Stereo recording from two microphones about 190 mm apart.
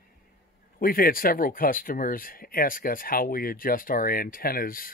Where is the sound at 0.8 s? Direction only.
50° left (ahead or behind).